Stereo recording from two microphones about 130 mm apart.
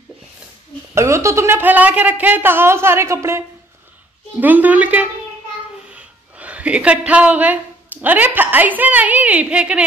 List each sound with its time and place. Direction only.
0.9 s a woman's voice: 20° right (ahead or behind)